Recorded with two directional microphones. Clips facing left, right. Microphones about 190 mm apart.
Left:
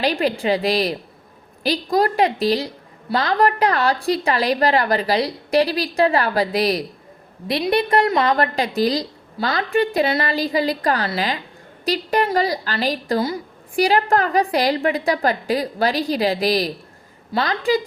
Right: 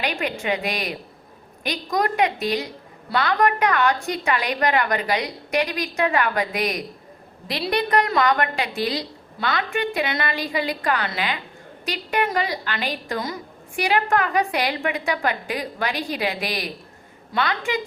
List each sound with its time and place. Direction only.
0.0 s a woman's voice: 35° left (ahead or behind)